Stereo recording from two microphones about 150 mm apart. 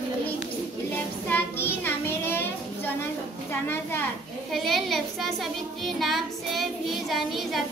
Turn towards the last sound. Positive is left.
turn(degrees=0)  # may be behind; listen again after turning